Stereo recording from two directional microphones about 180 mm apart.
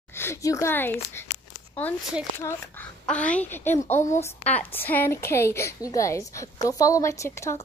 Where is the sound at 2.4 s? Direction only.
10° left (ahead or behind).